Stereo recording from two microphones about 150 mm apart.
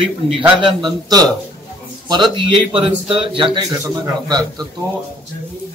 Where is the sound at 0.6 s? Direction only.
30° right (ahead or behind).